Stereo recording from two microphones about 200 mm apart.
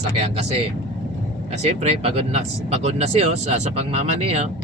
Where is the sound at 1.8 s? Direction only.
30° right (ahead or behind).